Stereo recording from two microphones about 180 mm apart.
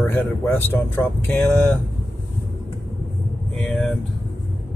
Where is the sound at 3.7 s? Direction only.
5° left (ahead or behind).